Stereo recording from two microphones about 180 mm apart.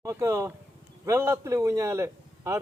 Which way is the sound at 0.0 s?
15° right (ahead or behind).